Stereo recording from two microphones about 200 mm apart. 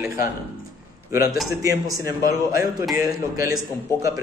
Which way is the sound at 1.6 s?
15° right (ahead or behind).